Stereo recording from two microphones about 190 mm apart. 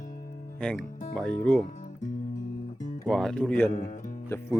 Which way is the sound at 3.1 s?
5° left (ahead or behind).